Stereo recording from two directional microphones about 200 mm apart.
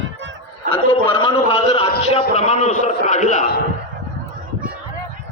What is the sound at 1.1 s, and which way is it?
A man's voice, 25° left (ahead or behind).